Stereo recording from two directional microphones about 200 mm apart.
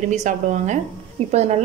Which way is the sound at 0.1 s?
35° right (ahead or behind).